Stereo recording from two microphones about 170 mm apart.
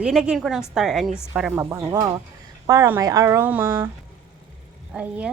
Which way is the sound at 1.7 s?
20° right (ahead or behind).